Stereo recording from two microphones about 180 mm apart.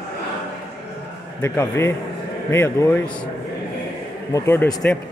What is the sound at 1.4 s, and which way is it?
A man's voice, 15° left (ahead or behind).